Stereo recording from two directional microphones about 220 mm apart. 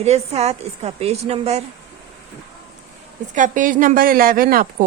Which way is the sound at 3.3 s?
35° right (ahead or behind).